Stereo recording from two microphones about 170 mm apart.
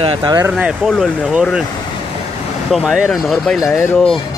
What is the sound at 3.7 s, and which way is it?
Speech, 15° left (ahead or behind).